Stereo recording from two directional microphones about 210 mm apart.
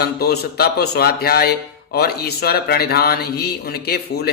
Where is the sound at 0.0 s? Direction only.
50° left (ahead or behind).